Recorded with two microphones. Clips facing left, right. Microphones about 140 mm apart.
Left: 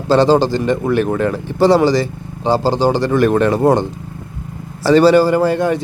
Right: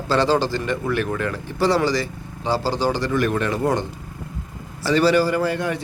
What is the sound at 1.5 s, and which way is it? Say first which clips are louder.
A man's voice: left 8 dB; 25° left (ahead or behind).